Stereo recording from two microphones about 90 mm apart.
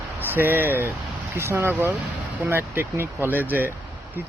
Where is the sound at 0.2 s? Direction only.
25° right (ahead or behind).